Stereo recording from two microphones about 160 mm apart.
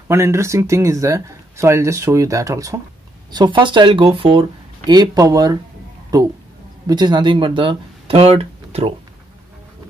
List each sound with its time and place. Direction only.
0.1 s speech: 15° right (ahead or behind); by 8.9 s 40° right (ahead or behind)